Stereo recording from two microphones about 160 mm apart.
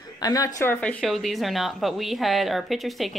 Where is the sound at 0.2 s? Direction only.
20° left (ahead or behind).